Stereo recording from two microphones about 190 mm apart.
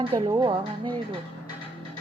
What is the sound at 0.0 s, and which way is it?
Speech, 30° right (ahead or behind).